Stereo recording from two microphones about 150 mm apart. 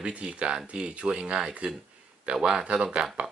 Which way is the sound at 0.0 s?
5° right (ahead or behind).